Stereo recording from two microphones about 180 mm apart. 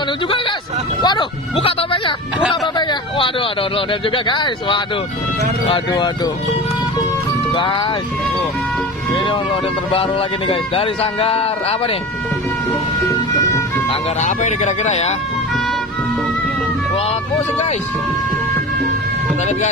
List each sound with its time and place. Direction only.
1.0 s speech: 30° left (ahead or behind)
7.5 s speech: 25° left (ahead or behind)
10.5 s speech: 30° left (ahead or behind)
13.8 s speech: 40° left (ahead or behind)